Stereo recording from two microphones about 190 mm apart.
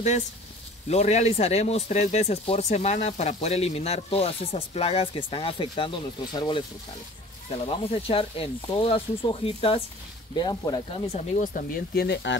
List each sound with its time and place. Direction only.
0.8 s speech: 35° left (ahead or behind)
7.6 s speech: 30° left (ahead or behind); by 12.4 s 65° left (ahead or behind)